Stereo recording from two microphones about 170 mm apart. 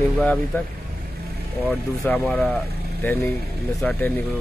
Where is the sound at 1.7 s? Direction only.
5° left (ahead or behind).